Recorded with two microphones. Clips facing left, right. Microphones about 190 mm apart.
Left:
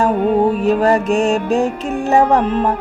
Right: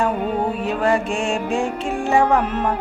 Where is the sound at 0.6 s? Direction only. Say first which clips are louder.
Left 6 dB; 40° left (ahead or behind).